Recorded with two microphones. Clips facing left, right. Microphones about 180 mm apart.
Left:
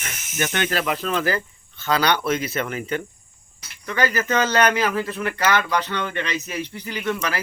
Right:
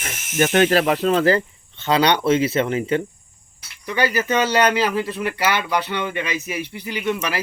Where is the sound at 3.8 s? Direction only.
15° right (ahead or behind).